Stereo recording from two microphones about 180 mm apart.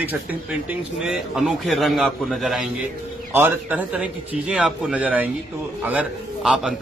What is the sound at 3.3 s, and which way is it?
A man's voice, 15° right (ahead or behind).